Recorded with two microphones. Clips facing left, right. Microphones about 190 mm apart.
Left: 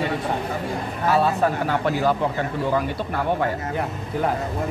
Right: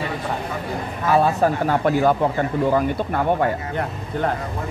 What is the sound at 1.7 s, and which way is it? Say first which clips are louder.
Speech: right 3 dB; 50° right (ahead or behind).